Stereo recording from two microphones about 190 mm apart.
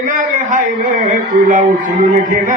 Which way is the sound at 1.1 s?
45° right (ahead or behind).